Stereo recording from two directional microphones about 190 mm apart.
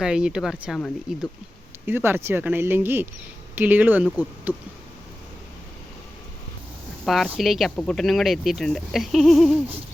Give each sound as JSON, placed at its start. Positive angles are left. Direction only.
{"t": 0.0, "sound": "speech", "side_deg": -5}
{"t": 7.0, "sound": "speech", "side_deg": 0}